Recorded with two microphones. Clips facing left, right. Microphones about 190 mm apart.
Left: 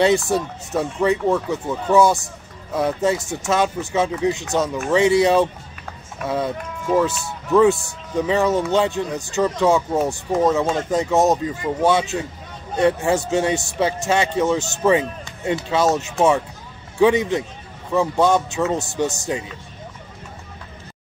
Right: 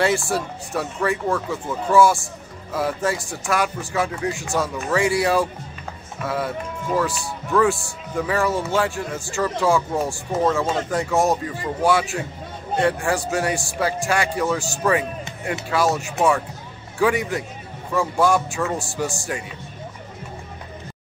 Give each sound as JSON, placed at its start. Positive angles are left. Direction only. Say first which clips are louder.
{"t": 0.0, "sound": "speech", "louder": "left 4 dB", "side_deg": 20}
{"t": 7.5, "sound": "speech", "louder": "left 4 dB", "side_deg": 20}